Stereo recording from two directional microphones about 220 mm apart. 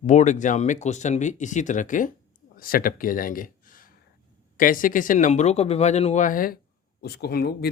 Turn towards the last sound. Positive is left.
turn(degrees=45)  # may be behind; listen again after turning